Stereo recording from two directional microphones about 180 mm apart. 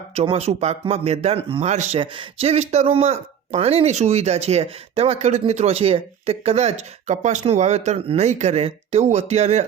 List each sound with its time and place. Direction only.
0.1 s speech: 35° right (ahead or behind)